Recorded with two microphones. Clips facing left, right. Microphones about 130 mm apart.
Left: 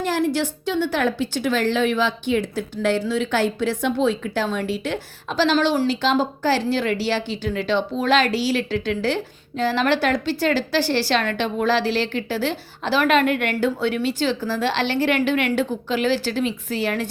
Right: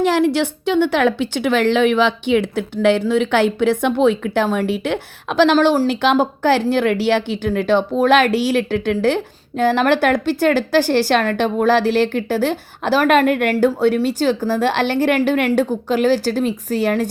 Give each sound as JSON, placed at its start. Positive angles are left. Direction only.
{"t": 0.0, "sound": "a woman's voice", "side_deg": -75}
{"t": 5.9, "sound": "a woman's voice", "side_deg": -60}